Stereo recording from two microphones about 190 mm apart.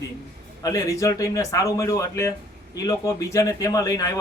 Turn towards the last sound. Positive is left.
turn(degrees=20)  # may be behind; listen again after turning